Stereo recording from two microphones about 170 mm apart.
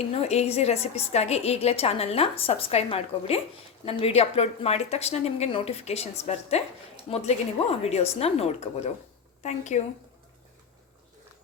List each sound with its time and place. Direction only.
0.0 s a woman's voice: 40° left (ahead or behind)